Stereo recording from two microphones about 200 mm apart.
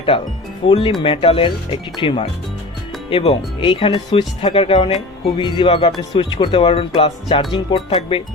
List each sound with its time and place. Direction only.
0.7 s speech: 30° left (ahead or behind)